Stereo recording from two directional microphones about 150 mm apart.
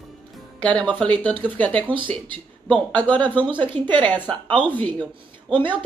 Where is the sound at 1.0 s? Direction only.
10° left (ahead or behind).